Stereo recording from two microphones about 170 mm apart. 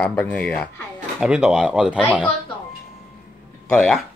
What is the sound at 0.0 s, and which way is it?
Speech, 10° left (ahead or behind).